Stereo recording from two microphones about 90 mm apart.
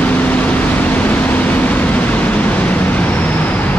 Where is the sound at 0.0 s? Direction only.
15° left (ahead or behind).